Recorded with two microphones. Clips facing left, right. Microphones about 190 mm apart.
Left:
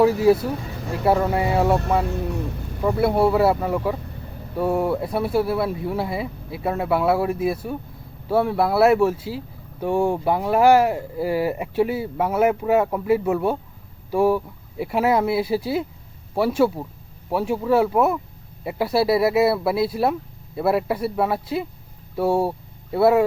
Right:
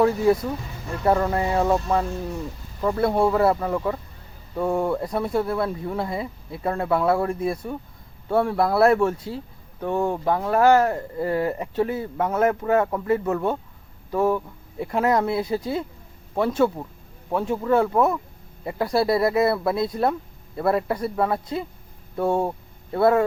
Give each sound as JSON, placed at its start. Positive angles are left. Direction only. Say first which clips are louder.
{"t": 0.0, "sound": "speech", "louder": "left 3 dB", "side_deg": 5}
{"t": 2.8, "sound": "speech", "louder": "left 2 dB", "side_deg": 10}